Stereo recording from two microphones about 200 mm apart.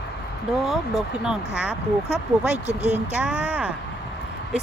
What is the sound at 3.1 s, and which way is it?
Speech, 5° right (ahead or behind).